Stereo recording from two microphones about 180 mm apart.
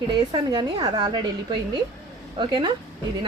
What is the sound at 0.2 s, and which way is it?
A woman's voice, 25° right (ahead or behind).